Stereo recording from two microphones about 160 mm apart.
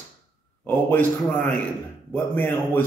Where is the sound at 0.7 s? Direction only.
10° left (ahead or behind).